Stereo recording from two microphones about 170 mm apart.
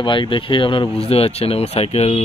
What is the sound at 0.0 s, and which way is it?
Speech, 30° left (ahead or behind).